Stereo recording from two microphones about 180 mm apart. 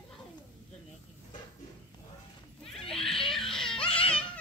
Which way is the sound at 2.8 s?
Centre (ahead or behind).